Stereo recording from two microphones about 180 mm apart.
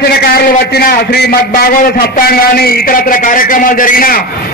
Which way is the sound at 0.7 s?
60° left (ahead or behind).